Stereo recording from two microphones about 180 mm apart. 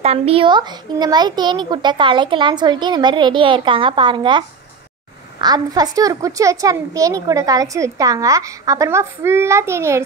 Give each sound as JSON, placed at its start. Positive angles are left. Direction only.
{"t": 0.0, "sound": "a child's voice", "side_deg": -35}